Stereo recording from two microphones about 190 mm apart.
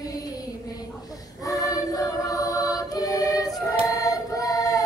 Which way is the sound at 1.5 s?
20° left (ahead or behind).